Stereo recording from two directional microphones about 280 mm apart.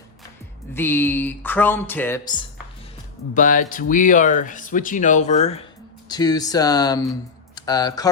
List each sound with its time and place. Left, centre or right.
0.7 s speech: centre
3.3 s speech: left